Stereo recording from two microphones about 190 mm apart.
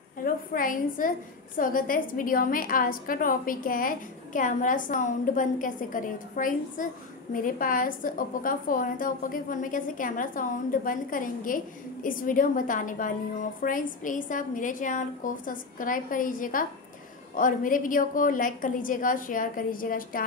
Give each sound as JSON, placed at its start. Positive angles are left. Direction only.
{"t": 0.2, "sound": "a woman's voice", "side_deg": 45}